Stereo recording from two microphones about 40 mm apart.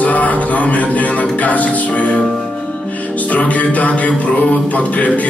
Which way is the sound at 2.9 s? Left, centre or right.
Left.